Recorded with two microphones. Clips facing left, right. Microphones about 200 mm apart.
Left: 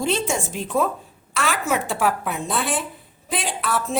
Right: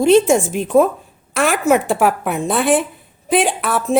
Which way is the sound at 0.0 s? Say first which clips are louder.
Right 12 dB; 55° right (ahead or behind).